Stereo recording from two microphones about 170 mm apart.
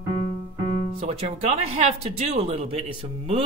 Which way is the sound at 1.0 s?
40° right (ahead or behind).